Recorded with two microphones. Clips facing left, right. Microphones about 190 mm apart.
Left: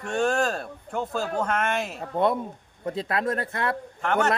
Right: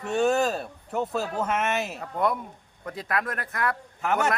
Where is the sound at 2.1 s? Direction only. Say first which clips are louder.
Left 3 dB; 25° left (ahead or behind).